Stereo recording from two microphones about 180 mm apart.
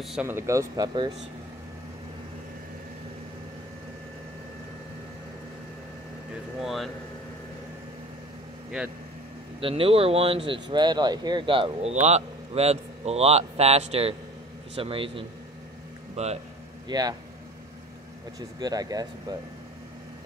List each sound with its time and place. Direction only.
0.0 s speech: centre (ahead or behind)
0.3 s speech: 15° right (ahead or behind)
6.6 s air conditioning: centre (ahead or behind)
9.6 s speech: 30° right (ahead or behind)
16.8 s speech: 20° right (ahead or behind)
18.6 s speech: 20° right (ahead or behind)